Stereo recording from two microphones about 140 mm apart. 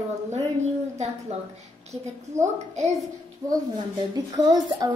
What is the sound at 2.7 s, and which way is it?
Speech, 55° right (ahead or behind).